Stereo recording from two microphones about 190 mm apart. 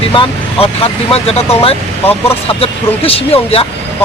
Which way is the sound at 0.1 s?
30° left (ahead or behind).